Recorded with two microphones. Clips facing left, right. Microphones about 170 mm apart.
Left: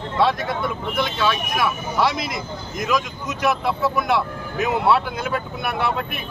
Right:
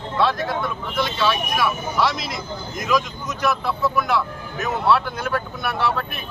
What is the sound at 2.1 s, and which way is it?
Speech, 55° left (ahead or behind).